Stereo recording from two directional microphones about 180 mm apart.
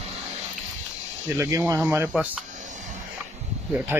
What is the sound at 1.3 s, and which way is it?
Speech, 15° right (ahead or behind).